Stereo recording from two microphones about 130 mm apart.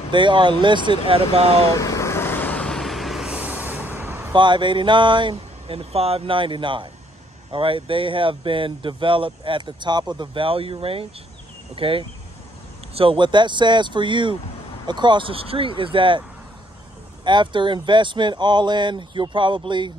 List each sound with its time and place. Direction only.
0.1 s speech: 40° right (ahead or behind)
1.7 s vehicle: 25° left (ahead or behind); by 4.2 s 15° right (ahead or behind)
4.3 s speech: 35° right (ahead or behind)
17.2 s speech: 35° right (ahead or behind)